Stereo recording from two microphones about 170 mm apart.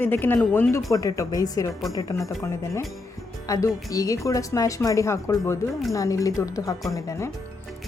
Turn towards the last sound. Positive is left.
turn(degrees=20)  # may be behind; listen again after turning